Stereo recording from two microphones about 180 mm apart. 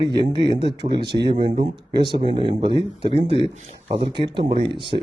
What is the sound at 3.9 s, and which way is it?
Speech, 30° right (ahead or behind).